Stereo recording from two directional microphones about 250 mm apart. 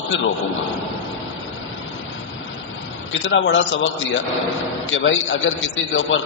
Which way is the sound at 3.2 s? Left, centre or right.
Left.